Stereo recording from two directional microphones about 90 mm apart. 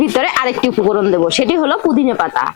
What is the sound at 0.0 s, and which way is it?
Speech, 20° left (ahead or behind).